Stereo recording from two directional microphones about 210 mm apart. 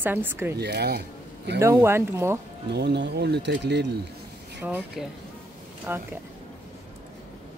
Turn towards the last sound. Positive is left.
turn(degrees=-10)  # may be behind; listen again after turning